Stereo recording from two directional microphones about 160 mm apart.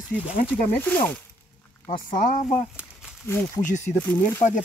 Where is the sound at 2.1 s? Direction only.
55° left (ahead or behind).